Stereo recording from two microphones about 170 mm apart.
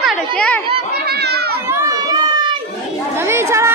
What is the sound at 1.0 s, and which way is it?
Children playing, 70° right (ahead or behind).